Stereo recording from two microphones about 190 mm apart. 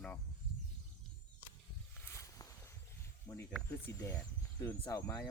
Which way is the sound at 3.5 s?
15° left (ahead or behind).